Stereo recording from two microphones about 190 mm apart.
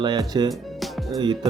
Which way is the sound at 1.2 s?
25° right (ahead or behind).